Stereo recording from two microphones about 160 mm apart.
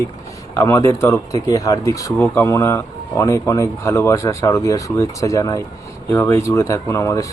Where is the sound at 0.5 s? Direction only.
20° left (ahead or behind).